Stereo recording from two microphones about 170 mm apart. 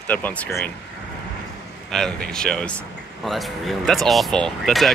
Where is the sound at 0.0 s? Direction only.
10° left (ahead or behind).